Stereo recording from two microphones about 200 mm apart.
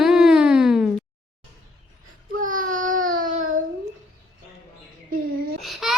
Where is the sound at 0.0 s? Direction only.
Centre (ahead or behind).